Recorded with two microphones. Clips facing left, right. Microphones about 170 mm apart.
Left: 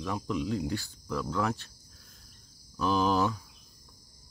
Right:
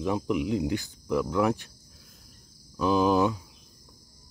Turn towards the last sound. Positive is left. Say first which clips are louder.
# right 4 dB
turn(degrees=-15)  # may be behind; listen again after turning